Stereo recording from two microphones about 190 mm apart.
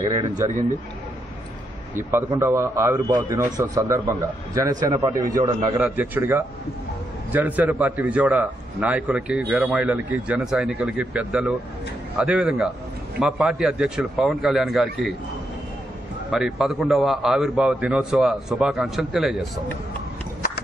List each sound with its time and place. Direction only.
2.0 s a man's voice: 10° right (ahead or behind)
5.9 s a man's voice: 10° right (ahead or behind)
16.3 s a man's voice: centre (ahead or behind)